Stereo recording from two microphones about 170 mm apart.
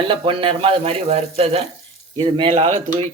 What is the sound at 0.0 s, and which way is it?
Speech, 30° right (ahead or behind).